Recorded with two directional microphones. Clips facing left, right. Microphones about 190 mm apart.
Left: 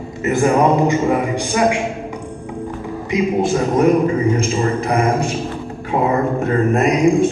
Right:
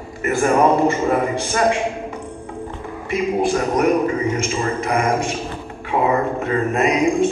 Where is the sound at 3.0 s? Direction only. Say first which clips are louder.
Left 2 dB; 25° left (ahead or behind).